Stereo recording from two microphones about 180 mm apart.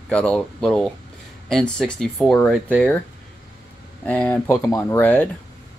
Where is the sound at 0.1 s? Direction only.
5° left (ahead or behind).